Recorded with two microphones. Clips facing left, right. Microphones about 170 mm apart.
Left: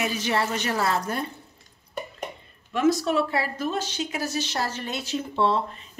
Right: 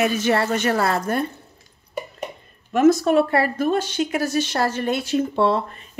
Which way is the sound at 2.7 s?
50° right (ahead or behind).